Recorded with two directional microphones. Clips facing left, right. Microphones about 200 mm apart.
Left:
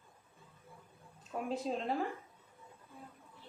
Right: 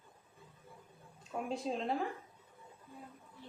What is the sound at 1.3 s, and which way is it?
Speech, centre (ahead or behind).